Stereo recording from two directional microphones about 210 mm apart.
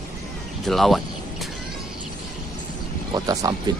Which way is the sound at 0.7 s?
Centre (ahead or behind).